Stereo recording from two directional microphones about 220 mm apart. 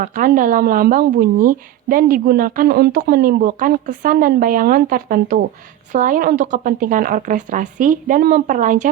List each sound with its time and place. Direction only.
0.0 s speech: 40° right (ahead or behind)